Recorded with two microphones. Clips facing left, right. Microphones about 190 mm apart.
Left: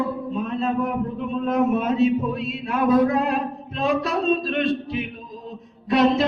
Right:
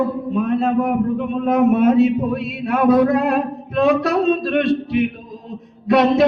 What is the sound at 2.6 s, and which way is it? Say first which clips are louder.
A man's voice: right 4 dB; 65° right (ahead or behind).